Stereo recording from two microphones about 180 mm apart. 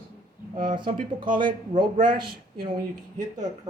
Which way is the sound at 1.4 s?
25° right (ahead or behind).